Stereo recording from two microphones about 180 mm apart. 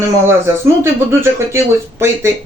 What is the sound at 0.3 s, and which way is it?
Speech, 15° right (ahead or behind).